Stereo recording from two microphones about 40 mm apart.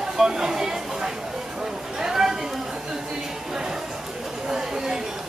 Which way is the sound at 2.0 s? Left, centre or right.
Centre.